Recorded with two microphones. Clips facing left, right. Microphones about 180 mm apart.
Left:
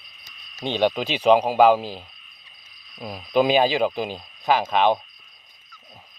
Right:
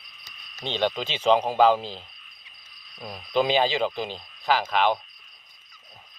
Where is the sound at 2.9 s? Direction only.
25° left (ahead or behind).